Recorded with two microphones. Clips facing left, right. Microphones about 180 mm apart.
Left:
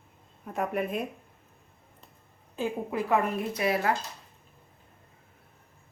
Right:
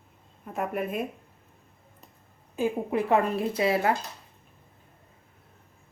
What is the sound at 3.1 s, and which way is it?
Speech, 25° right (ahead or behind).